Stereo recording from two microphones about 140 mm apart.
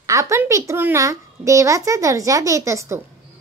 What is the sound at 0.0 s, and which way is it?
A child's voice, 20° right (ahead or behind).